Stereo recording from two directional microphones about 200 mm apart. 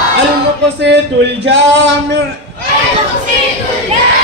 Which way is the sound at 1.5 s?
65° right (ahead or behind).